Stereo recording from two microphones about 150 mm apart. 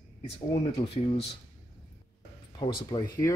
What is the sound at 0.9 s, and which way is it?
Speech, 40° left (ahead or behind).